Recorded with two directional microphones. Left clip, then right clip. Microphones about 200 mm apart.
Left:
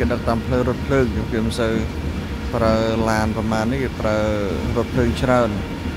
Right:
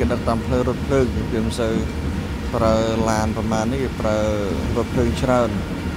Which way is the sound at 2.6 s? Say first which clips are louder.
Even; 15° left (ahead or behind).